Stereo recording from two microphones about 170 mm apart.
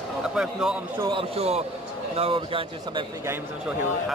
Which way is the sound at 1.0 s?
30° right (ahead or behind).